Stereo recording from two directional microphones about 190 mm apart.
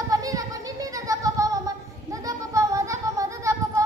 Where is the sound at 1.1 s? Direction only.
15° right (ahead or behind).